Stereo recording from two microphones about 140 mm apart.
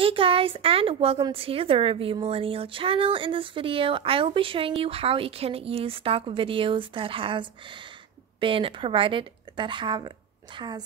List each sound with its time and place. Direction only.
0.0 s a woman's voice: 40° right (ahead or behind)